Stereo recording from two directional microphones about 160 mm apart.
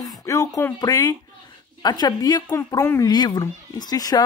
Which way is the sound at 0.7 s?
20° left (ahead or behind).